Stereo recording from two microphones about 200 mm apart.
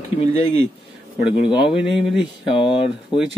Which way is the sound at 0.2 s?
30° left (ahead or behind).